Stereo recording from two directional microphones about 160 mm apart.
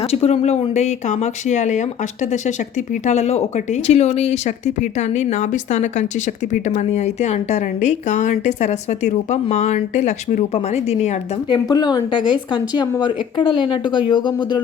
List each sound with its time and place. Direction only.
0.0 s a woman's voice: 40° left (ahead or behind)
2.9 s a woman's voice: 45° left (ahead or behind)
11.4 s speech: 30° left (ahead or behind)